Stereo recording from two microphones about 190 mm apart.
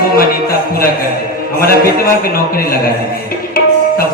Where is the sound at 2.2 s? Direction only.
50° left (ahead or behind).